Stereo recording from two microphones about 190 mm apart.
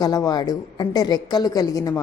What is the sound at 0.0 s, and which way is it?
A woman's voice, 20° left (ahead or behind).